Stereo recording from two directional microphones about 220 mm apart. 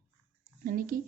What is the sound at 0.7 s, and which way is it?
Speech, 40° right (ahead or behind).